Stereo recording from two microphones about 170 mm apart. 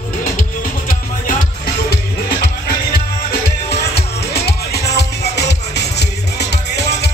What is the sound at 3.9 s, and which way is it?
Music, 70° left (ahead or behind).